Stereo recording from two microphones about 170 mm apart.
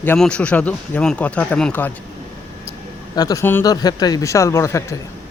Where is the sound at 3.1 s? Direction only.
20° left (ahead or behind).